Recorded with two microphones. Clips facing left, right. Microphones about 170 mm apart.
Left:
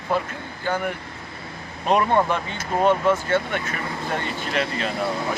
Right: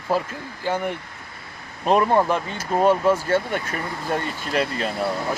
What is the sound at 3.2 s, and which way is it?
Speech, 35° right (ahead or behind).